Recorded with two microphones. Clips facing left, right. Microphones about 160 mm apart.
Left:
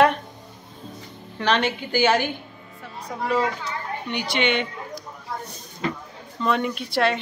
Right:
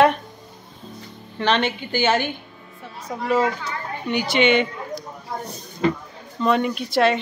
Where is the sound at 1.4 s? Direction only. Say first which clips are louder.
Right 1 dB; 5° left (ahead or behind).